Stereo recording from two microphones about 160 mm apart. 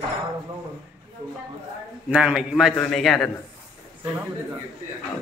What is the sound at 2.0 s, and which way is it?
Speech, 5° right (ahead or behind).